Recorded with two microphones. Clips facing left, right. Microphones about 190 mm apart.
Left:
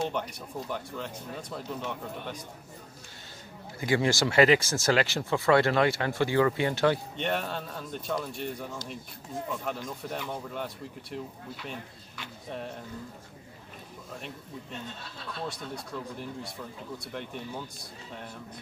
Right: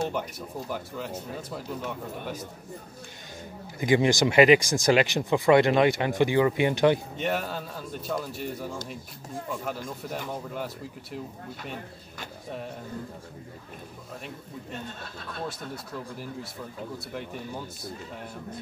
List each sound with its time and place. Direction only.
0.0 s speech: 5° right (ahead or behind)
3.8 s speech: 20° right (ahead or behind)
7.2 s speech: 5° right (ahead or behind)
12.4 s speech: 5° right (ahead or behind)
14.7 s speech: 50° right (ahead or behind)
15.4 s speech: 5° right (ahead or behind)